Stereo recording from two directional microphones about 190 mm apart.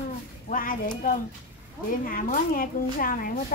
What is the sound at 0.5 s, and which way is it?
A woman's voice, 45° left (ahead or behind).